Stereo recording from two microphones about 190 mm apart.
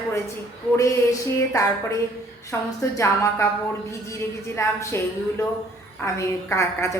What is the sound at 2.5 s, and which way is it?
Speech, 10° left (ahead or behind).